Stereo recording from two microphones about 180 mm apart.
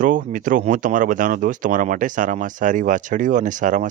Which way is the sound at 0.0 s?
45° right (ahead or behind).